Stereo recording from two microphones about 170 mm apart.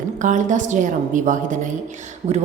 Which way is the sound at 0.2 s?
50° right (ahead or behind).